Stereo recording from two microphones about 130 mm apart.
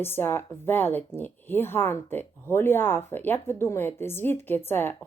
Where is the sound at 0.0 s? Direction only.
15° left (ahead or behind).